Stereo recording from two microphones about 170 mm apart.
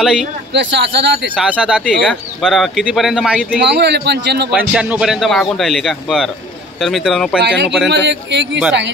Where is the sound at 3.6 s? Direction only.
85° right.